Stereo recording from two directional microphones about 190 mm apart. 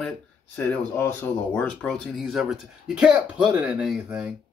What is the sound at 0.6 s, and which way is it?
Speech, 10° left (ahead or behind).